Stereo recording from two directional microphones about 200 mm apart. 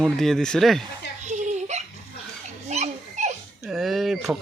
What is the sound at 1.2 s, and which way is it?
Giggle, 35° right (ahead or behind).